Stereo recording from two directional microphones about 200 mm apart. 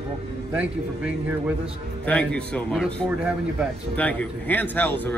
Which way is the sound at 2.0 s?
5° left (ahead or behind).